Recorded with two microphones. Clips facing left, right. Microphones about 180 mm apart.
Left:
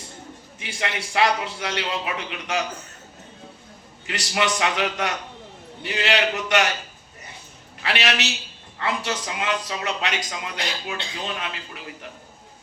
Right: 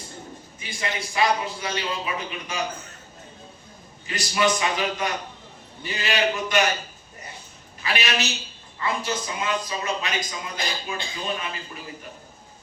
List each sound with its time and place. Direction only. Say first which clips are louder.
0.6 s speech: left 1 dB; 75° left (ahead or behind)
4.0 s speech: right 2 dB; 75° left (ahead or behind)
7.8 s speech: left 2 dB; 75° left (ahead or behind)